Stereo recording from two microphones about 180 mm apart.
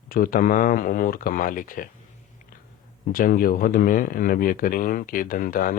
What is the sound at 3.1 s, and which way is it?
Speech, 50° left (ahead or behind).